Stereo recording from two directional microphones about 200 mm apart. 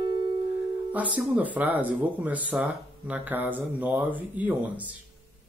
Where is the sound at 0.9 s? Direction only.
5° right (ahead or behind).